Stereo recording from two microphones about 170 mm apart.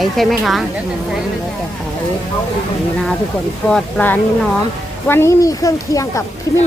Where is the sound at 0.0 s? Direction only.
Centre (ahead or behind).